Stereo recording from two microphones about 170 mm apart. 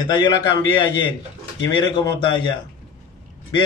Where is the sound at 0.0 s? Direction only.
25° left (ahead or behind).